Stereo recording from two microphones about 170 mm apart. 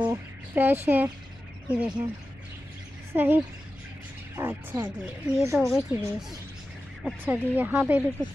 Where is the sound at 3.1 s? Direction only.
10° right (ahead or behind).